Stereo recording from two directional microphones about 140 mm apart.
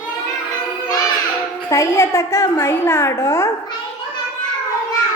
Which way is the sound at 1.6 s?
20° left (ahead or behind).